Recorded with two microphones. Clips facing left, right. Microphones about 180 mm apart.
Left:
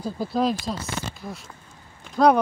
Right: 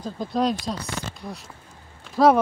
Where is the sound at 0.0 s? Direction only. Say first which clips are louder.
Even; 5° left (ahead or behind).